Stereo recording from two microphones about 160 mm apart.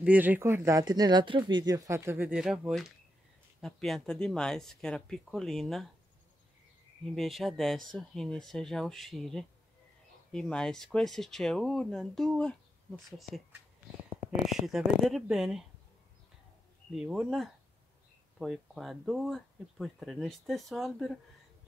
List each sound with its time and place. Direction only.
0.0 s speech: 10° right (ahead or behind)
7.1 s speech: centre (ahead or behind)
14.5 s speech: centre (ahead or behind)
16.9 s speech: 5° right (ahead or behind)